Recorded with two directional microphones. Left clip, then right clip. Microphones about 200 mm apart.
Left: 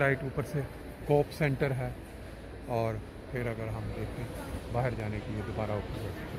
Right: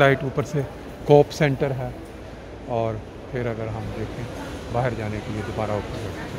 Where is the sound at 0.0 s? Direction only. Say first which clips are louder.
Right 11 dB; 15° right (ahead or behind).